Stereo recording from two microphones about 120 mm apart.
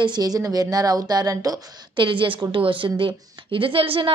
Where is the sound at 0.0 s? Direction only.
35° right (ahead or behind).